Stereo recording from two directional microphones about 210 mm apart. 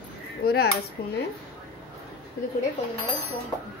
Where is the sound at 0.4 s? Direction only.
50° left (ahead or behind).